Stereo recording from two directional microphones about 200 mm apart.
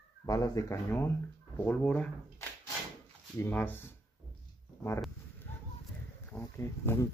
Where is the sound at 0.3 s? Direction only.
15° left (ahead or behind).